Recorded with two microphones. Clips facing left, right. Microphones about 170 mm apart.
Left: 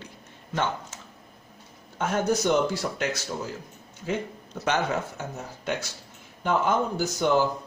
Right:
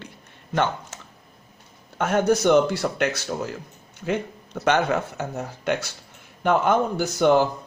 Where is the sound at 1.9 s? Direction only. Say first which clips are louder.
Right 5 dB; 65° right (ahead or behind).